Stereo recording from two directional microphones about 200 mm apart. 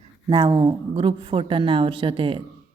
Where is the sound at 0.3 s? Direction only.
20° right (ahead or behind).